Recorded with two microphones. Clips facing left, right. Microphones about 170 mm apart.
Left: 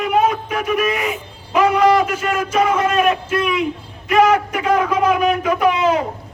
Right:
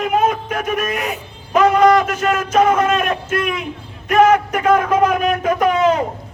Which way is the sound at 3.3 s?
50° right (ahead or behind).